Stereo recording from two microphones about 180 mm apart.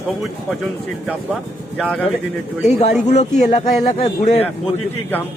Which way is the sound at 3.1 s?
40° left (ahead or behind).